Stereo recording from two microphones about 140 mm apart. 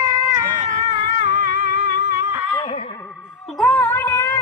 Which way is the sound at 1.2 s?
70° right (ahead or behind).